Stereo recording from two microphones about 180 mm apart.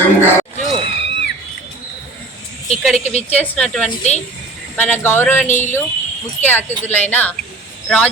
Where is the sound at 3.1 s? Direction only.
35° left (ahead or behind).